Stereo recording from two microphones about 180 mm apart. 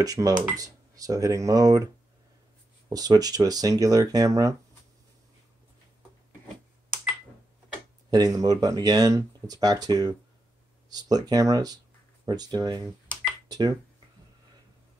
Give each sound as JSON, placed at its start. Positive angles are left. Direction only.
{"t": 0.0, "sound": "speech", "side_deg": -20}
{"t": 2.9, "sound": "speech", "side_deg": -20}
{"t": 8.1, "sound": "speech", "side_deg": -20}